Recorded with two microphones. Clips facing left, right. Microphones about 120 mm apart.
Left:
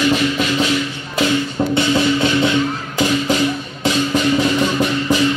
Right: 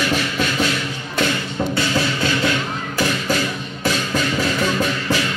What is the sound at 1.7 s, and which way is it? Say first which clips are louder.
Music: left 7 dB; 20° left (ahead or behind).